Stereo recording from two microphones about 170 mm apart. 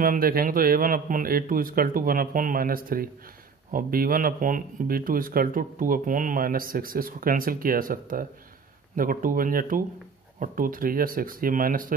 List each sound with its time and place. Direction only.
0.0 s speech: 55° right (ahead or behind)